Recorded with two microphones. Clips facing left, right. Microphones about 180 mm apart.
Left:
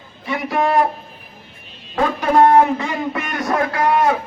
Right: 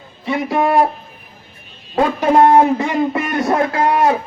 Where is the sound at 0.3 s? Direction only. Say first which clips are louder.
Right 3 dB; 25° right (ahead or behind).